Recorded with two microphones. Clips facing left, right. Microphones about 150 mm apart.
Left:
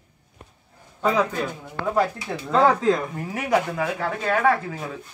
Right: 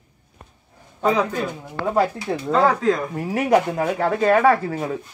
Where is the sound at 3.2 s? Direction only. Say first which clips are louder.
Right 5 dB; 30° right (ahead or behind).